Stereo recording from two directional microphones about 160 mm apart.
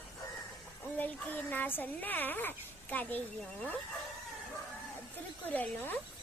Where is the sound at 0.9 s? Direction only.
10° left (ahead or behind).